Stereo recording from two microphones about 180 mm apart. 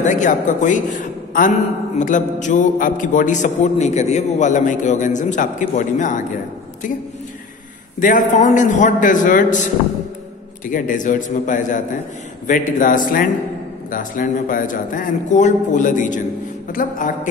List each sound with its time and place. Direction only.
0.0 s a man's voice: 45° left (ahead or behind)
8.0 s a man's voice: 45° left (ahead or behind)
10.7 s a man's voice: 45° left (ahead or behind)